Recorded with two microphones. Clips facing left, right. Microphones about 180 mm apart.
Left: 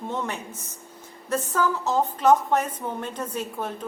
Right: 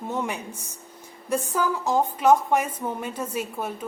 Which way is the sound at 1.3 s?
10° right (ahead or behind).